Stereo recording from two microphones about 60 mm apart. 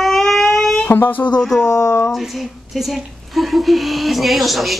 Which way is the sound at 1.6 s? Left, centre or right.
Left.